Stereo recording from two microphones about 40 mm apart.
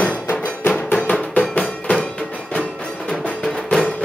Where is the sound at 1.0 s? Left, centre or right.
Left.